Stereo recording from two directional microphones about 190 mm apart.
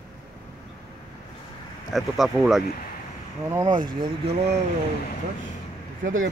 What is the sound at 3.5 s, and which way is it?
Speech, 20° right (ahead or behind).